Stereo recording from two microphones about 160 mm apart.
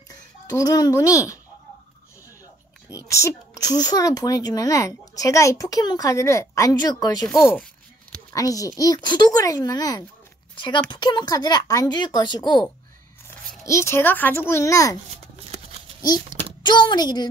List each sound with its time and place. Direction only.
0.1 s a child's voice: 20° left (ahead or behind)
3.1 s a woman's voice: 20° left (ahead or behind)
7.2 s speech: 5° left (ahead or behind)
8.3 s a woman's voice: 20° left (ahead or behind)
10.5 s a sound: 30° left (ahead or behind)
10.9 s a woman's voice: 25° left (ahead or behind)
13.3 s a child's voice: 15° left (ahead or behind)
16.6 s a woman's voice: 25° left (ahead or behind)